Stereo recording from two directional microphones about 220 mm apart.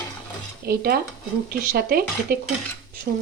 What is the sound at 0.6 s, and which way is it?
Speech, 45° right (ahead or behind).